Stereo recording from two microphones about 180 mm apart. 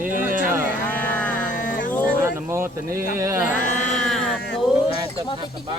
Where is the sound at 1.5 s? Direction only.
45° left (ahead or behind).